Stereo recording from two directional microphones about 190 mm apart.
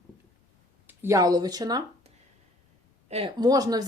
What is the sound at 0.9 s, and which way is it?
Speech, 15° right (ahead or behind).